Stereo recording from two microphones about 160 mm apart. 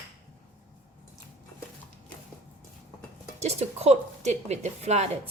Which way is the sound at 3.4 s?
40° right (ahead or behind).